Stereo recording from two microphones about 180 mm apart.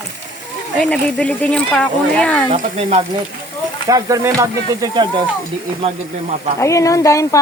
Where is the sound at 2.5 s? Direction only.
35° right (ahead or behind).